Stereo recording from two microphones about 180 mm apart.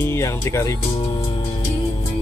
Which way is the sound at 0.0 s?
15° left (ahead or behind).